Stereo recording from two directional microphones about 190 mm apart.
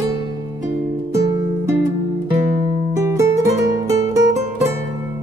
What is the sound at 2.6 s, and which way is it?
Music, 15° right (ahead or behind).